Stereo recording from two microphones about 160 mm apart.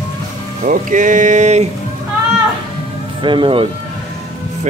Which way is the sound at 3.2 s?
30° right (ahead or behind).